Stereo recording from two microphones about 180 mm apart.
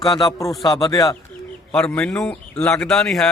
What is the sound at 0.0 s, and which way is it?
Speech, 20° left (ahead or behind).